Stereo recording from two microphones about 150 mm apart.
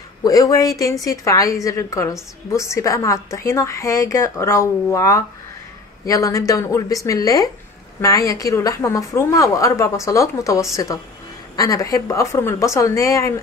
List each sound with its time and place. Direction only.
0.2 s a woman's voice: 25° left (ahead or behind)